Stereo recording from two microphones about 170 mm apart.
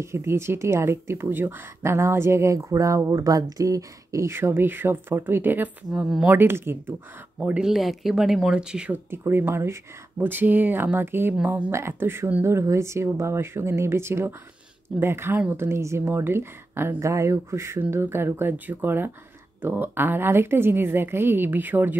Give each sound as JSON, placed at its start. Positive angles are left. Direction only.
{"t": 0.0, "sound": "speech", "side_deg": -15}